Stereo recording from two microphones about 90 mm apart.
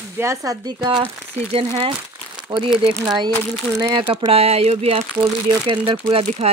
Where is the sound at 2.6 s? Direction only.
75° right (ahead or behind).